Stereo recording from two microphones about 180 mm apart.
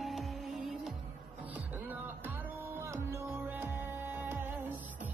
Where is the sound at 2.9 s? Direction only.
15° right (ahead or behind).